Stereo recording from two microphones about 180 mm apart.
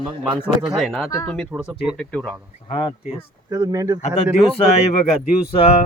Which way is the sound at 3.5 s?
20° right (ahead or behind).